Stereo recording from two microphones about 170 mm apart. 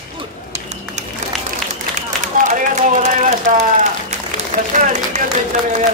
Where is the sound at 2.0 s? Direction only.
45° right (ahead or behind).